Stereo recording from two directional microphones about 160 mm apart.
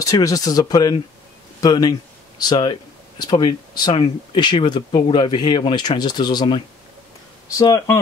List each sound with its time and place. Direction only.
0.0 s speech: 20° left (ahead or behind)